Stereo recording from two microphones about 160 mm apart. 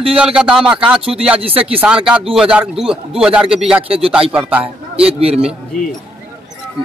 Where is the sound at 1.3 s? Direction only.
35° right (ahead or behind).